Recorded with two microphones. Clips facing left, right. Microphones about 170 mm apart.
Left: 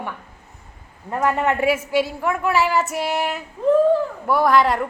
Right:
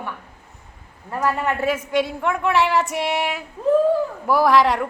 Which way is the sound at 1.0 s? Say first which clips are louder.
Left 2 dB; 20° left (ahead or behind).